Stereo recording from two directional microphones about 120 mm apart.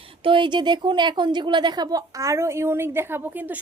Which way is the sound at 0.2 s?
45° right (ahead or behind).